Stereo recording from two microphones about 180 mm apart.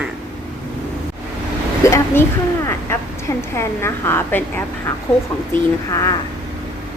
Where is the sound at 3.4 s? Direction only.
15° left (ahead or behind).